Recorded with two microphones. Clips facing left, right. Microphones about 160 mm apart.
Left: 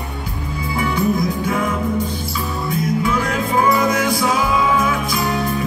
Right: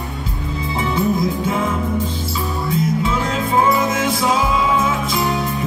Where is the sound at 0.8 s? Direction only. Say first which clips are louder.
Even; 25° right (ahead or behind).